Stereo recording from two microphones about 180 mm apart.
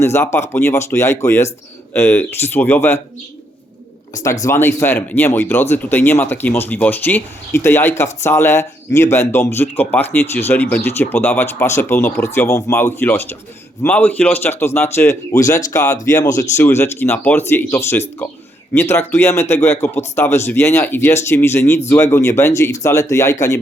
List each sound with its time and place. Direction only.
0.0 s speech: 15° left (ahead or behind)
4.4 s speech: 15° left (ahead or behind)